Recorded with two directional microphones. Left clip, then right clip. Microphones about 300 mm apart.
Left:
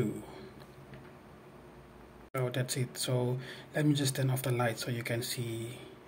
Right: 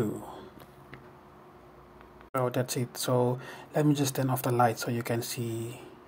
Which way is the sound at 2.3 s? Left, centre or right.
Right.